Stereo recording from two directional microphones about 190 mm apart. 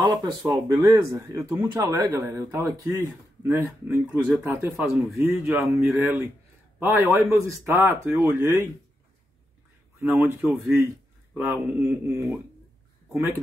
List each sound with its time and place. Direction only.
0.0 s a sound: 20° right (ahead or behind)
0.4 s speech: centre (ahead or behind)
0.8 s speech: 15° right (ahead or behind)
10.0 s speech: 10° right (ahead or behind)